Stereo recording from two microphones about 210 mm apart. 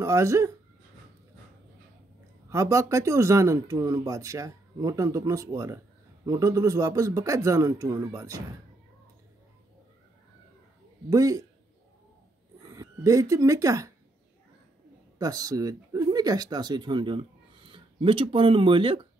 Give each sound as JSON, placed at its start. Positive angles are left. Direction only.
{"t": 0.0, "sound": "speech", "side_deg": -15}
{"t": 2.5, "sound": "speech", "side_deg": -15}
{"t": 11.1, "sound": "speech", "side_deg": -15}
{"t": 12.6, "sound": "speech", "side_deg": -15}
{"t": 15.1, "sound": "speech", "side_deg": -15}